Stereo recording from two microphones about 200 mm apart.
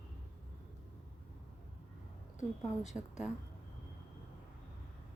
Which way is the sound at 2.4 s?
35° left (ahead or behind).